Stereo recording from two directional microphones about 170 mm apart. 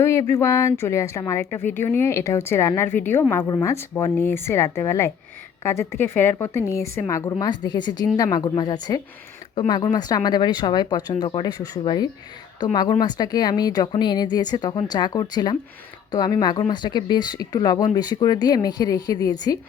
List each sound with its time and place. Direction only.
0.0 s a woman's voice: 15° left (ahead or behind)